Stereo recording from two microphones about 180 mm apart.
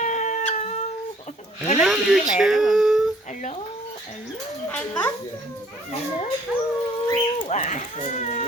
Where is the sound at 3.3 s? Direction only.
45° left (ahead or behind).